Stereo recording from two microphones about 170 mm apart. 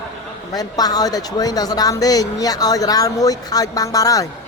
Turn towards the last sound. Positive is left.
turn(degrees=20)  # may be behind; listen again after turning